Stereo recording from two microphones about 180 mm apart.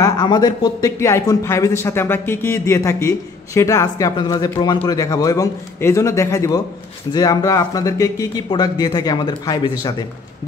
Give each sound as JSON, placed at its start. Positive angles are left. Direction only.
{"t": 0.0, "sound": "speech", "side_deg": 20}